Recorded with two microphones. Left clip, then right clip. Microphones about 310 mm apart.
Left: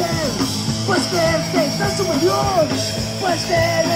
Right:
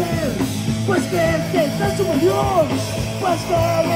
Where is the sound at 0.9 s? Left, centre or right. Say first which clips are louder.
Left 1 dB; left.